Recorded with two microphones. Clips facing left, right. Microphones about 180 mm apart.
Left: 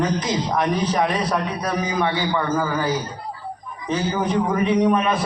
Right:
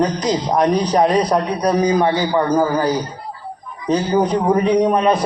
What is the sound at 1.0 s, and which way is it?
A man's voice, 40° right (ahead or behind).